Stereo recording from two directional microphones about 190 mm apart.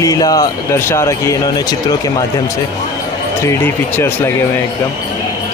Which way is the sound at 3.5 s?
10° left (ahead or behind).